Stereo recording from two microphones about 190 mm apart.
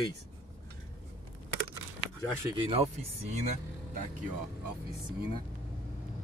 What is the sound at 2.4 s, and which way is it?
Speech, 30° right (ahead or behind).